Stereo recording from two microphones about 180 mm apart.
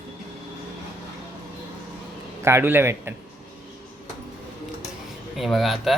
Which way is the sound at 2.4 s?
15° right (ahead or behind).